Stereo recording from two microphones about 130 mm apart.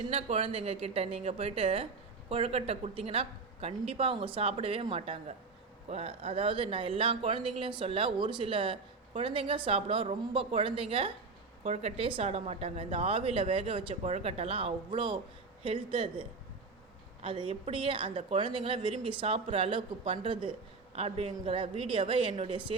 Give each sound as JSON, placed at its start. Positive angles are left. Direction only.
{"t": 0.1, "sound": "speech", "side_deg": -50}
{"t": 11.6, "sound": "speech", "side_deg": -55}
{"t": 13.9, "sound": "speech", "side_deg": -55}
{"t": 17.2, "sound": "speech", "side_deg": -45}